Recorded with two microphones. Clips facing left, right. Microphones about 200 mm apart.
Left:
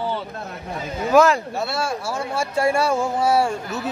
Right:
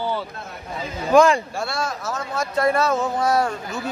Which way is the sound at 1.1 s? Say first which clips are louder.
Right 1 dB; 5° left (ahead or behind).